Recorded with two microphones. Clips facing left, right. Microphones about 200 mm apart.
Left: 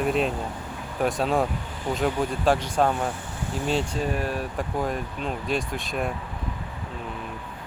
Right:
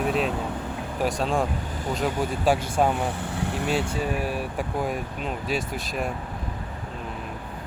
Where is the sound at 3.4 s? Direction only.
65° right (ahead or behind).